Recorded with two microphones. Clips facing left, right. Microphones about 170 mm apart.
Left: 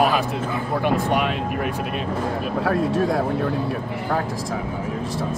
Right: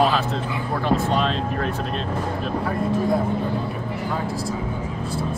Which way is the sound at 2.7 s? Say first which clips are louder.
Left 2 dB; 90° left.